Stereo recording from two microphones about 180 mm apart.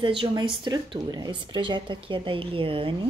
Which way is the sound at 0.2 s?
25° right (ahead or behind).